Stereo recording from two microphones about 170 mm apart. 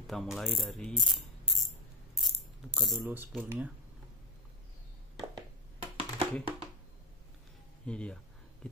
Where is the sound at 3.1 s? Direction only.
10° right (ahead or behind).